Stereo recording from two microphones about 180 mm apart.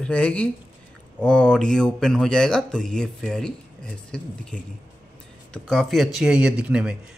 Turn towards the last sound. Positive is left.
turn(degrees=-5)  # may be behind; listen again after turning